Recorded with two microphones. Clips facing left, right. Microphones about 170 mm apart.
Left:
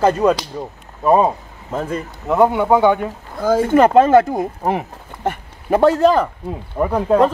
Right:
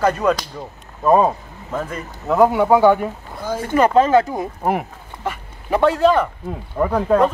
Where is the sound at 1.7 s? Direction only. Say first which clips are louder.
Left 3 dB; 30° left (ahead or behind).